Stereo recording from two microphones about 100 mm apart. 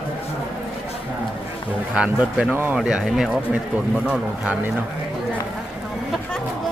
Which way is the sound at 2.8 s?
5° right (ahead or behind).